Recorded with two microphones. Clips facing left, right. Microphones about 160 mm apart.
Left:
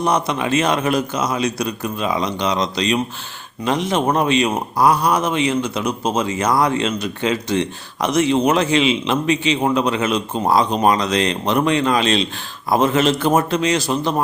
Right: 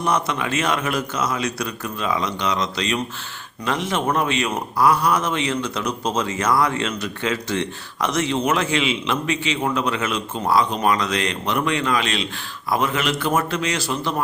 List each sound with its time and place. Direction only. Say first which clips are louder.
0.1 s a man's voice: left 1 dB; 20° left (ahead or behind)